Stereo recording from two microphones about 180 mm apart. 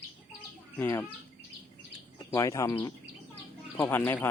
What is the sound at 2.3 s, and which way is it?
Speech, 15° left (ahead or behind).